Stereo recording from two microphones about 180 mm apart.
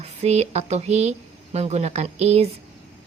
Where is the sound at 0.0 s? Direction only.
35° right (ahead or behind).